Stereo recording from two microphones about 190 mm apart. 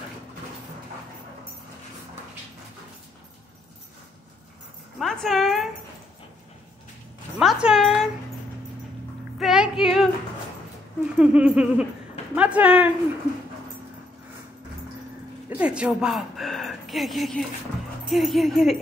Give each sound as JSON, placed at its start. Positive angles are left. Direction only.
{"t": 4.9, "sound": "dog", "side_deg": 0}
{"t": 7.3, "sound": "speech", "side_deg": -5}
{"t": 9.4, "sound": "female singing", "side_deg": -5}
{"t": 11.1, "sound": "a sound", "side_deg": -5}
{"t": 15.5, "sound": "speech", "side_deg": -5}